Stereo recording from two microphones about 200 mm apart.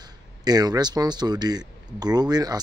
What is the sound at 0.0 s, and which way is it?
Speech, 20° right (ahead or behind).